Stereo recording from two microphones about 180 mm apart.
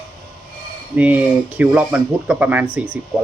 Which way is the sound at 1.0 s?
10° right (ahead or behind).